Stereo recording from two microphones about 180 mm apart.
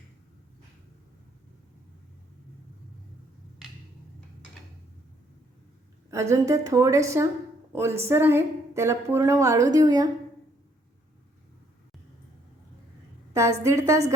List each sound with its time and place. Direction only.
6.1 s a woman's voice: 15° right (ahead or behind)
13.3 s a woman's voice: 15° right (ahead or behind)